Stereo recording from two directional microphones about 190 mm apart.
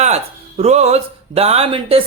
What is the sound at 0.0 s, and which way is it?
Speech, 35° right (ahead or behind).